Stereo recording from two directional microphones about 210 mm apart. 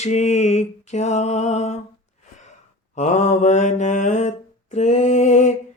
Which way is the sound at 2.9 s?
35° left (ahead or behind).